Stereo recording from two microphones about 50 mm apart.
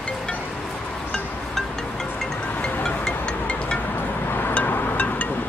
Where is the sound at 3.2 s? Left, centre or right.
Left.